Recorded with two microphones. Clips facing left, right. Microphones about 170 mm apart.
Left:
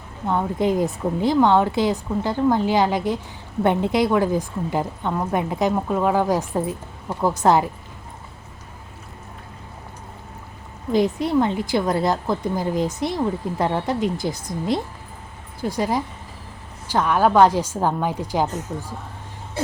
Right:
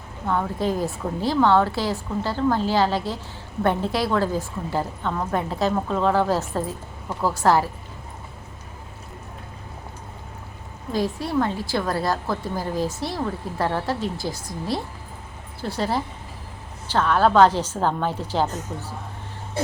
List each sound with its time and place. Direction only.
0.3 s a woman's voice: 20° left (ahead or behind)
10.9 s a woman's voice: 20° left (ahead or behind)